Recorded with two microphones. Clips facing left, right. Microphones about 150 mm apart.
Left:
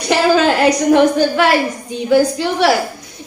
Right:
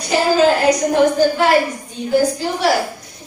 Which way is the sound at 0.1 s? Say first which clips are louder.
Left 1 dB; 75° left (ahead or behind).